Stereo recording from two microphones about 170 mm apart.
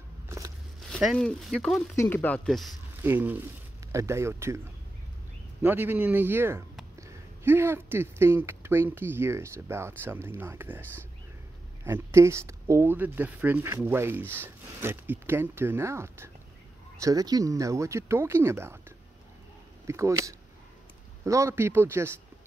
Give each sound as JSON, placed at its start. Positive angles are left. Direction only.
{"t": 0.8, "sound": "speech", "side_deg": 5}
{"t": 3.0, "sound": "speech", "side_deg": -10}
{"t": 5.6, "sound": "speech", "side_deg": -10}
{"t": 11.8, "sound": "speech", "side_deg": -15}